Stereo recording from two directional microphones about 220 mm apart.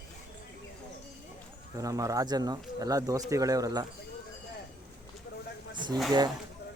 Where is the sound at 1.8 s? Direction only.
15° right (ahead or behind).